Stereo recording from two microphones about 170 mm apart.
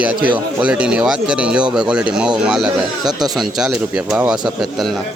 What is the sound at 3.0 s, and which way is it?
Speech, 25° right (ahead or behind).